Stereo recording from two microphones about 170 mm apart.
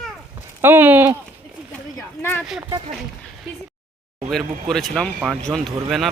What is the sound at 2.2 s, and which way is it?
Speech, 15° left (ahead or behind).